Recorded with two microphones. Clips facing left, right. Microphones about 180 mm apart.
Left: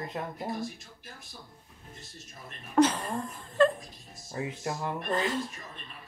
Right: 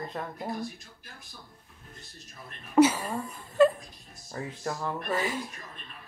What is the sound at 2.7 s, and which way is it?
Speech, 10° right (ahead or behind).